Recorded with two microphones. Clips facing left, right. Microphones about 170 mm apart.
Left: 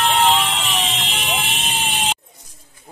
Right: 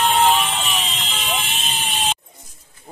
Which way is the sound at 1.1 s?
10° left (ahead or behind).